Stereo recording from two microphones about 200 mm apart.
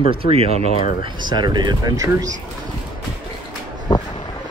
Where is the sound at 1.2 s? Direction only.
20° right (ahead or behind).